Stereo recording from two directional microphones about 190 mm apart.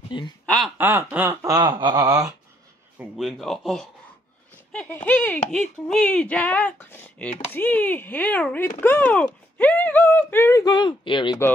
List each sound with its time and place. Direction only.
0.1 s speech: 25° left (ahead or behind)
0.7 s a sound: 10° right (ahead or behind)
3.0 s speech: centre (ahead or behind); by 11.3 s 25° left (ahead or behind)